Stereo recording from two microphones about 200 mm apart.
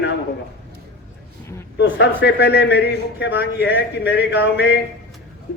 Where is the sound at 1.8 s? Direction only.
60° left (ahead or behind).